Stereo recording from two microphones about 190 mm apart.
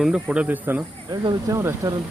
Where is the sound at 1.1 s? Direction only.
25° right (ahead or behind).